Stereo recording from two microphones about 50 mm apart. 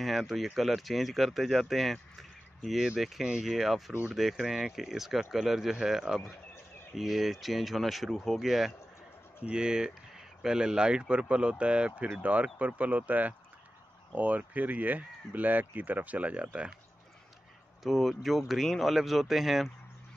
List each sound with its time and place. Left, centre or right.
0.0 s speech: centre
3.0 s speech: centre
9.4 s speech: centre
17.8 s speech: centre